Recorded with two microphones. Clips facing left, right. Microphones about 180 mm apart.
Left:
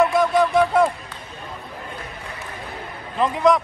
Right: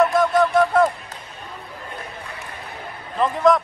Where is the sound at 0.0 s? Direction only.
Centre (ahead or behind).